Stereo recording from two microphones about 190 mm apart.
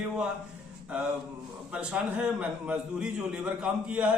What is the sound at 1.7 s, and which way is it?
A man's voice, 5° right (ahead or behind).